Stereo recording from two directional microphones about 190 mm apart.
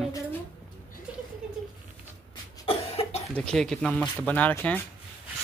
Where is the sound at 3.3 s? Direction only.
Centre (ahead or behind).